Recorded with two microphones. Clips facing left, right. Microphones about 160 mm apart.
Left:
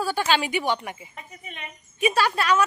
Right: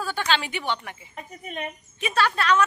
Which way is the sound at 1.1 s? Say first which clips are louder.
Right 6 dB; 45° right (ahead or behind).